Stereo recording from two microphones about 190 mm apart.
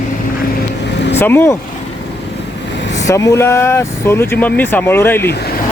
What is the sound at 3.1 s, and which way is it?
Speech, 15° left (ahead or behind).